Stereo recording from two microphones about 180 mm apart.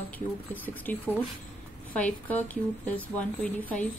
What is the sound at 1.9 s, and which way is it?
A woman's voice, 10° left (ahead or behind).